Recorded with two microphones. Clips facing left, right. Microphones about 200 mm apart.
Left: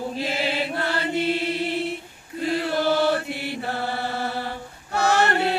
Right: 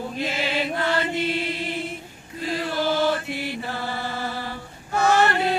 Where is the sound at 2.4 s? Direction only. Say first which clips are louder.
Left 2 dB; 60° left (ahead or behind).